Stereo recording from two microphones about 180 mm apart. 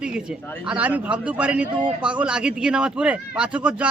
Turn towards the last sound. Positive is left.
turn(degrees=-5)  # may be behind; listen again after turning